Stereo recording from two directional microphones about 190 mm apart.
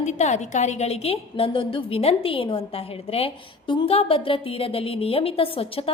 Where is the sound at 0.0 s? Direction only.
35° left (ahead or behind).